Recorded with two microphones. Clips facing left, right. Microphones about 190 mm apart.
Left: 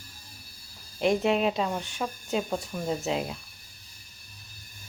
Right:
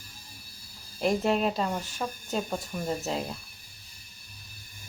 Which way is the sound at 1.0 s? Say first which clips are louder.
Left 2 dB; centre (ahead or behind).